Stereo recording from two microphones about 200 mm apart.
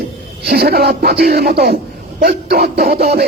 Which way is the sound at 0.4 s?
50° right (ahead or behind).